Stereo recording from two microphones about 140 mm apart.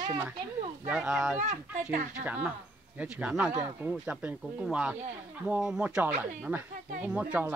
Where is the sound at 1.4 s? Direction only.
60° right (ahead or behind).